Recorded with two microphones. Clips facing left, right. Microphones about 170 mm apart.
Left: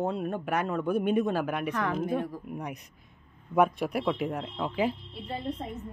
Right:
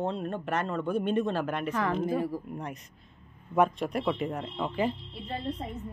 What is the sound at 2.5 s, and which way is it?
A woman's voice, 10° left (ahead or behind).